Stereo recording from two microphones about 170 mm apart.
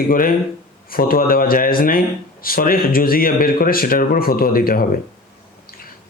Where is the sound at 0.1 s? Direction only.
55° left (ahead or behind).